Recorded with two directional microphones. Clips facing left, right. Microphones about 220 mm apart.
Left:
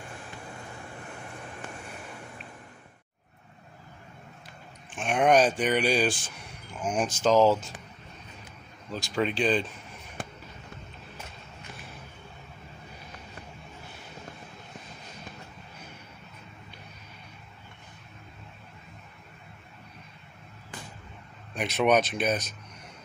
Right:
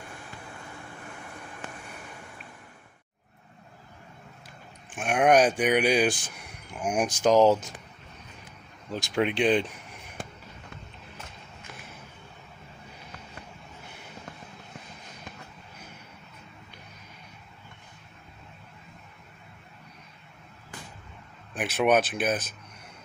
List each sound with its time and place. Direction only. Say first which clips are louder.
4.9 s speech: right 1 dB; 10° right (ahead or behind)
8.9 s speech: right 2 dB; 15° right (ahead or behind)
21.5 s speech: even; 5° right (ahead or behind)